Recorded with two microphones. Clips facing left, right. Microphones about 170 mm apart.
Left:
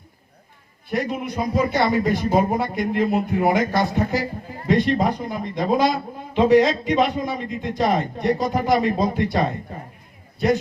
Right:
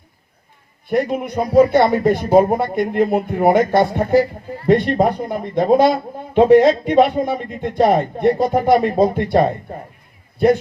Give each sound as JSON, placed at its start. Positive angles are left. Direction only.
{"t": 0.9, "sound": "speech", "side_deg": -55}